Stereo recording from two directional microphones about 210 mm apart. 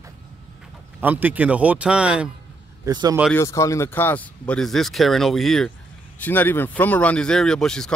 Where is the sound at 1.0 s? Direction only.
10° right (ahead or behind).